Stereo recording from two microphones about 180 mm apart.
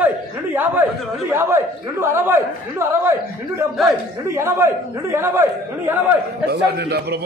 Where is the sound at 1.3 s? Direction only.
15° right (ahead or behind).